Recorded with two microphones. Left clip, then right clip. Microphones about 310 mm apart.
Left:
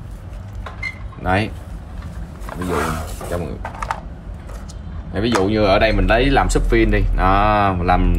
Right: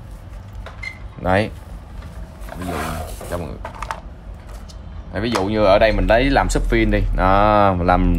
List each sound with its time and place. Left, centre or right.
1.2 s speech: right
2.4 s roaring cats: centre
3.3 s speech: centre
5.4 s speech: right